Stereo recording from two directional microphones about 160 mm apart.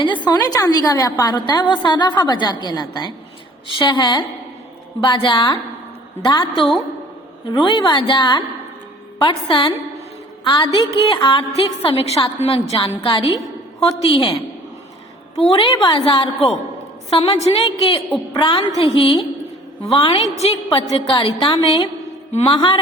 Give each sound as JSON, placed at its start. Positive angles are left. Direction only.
{"t": 0.0, "sound": "a woman's voice", "side_deg": 30}
{"t": 10.4, "sound": "music", "side_deg": 30}
{"t": 10.8, "sound": "a woman's voice", "side_deg": 30}
{"t": 15.4, "sound": "a woman's voice", "side_deg": 30}